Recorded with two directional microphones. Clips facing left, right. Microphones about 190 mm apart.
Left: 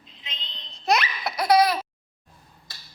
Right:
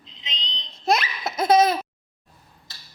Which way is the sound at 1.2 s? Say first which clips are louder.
Right 2 dB; 25° right (ahead or behind).